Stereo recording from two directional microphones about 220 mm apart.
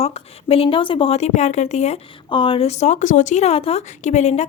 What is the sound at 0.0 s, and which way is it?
A woman's voice, 25° left (ahead or behind).